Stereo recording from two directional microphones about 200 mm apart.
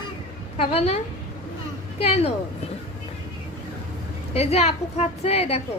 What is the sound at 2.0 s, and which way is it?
Speech, 30° left (ahead or behind).